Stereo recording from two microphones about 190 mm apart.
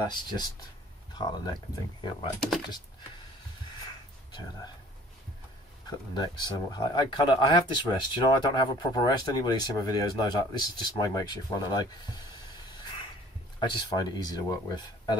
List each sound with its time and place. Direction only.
0.0 s speech: 25° left (ahead or behind)
5.9 s speech: 20° left (ahead or behind)
13.6 s speech: 20° left (ahead or behind)